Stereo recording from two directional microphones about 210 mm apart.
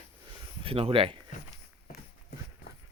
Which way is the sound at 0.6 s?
25° right (ahead or behind).